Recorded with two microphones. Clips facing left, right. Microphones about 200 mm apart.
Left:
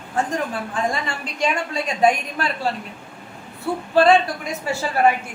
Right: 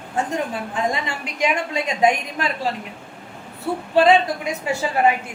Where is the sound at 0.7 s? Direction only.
20° right (ahead or behind).